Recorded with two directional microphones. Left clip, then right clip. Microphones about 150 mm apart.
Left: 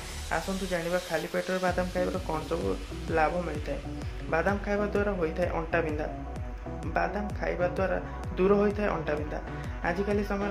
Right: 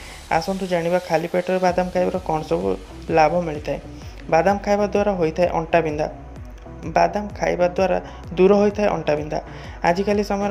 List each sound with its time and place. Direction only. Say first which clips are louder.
0.3 s speech: right 10 dB; 40° right (ahead or behind)